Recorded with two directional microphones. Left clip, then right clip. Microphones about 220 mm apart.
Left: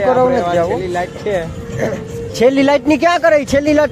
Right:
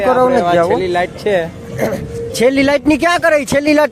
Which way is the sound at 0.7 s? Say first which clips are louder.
Right 4 dB; 40° right (ahead or behind).